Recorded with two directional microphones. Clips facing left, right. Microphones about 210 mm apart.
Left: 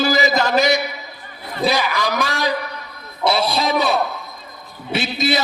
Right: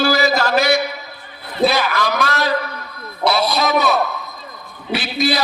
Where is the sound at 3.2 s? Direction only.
30° left (ahead or behind).